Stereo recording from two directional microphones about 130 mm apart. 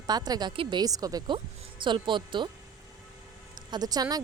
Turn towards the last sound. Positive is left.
turn(degrees=-30)  # may be behind; listen again after turning